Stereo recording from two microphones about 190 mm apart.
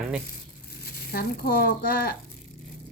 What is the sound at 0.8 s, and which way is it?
Speech, 55° left (ahead or behind).